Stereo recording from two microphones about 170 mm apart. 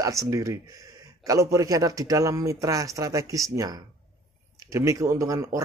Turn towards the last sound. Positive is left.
turn(degrees=-15)  # may be behind; listen again after turning